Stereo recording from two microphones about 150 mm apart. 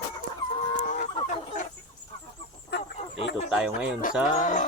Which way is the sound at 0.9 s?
50° left (ahead or behind).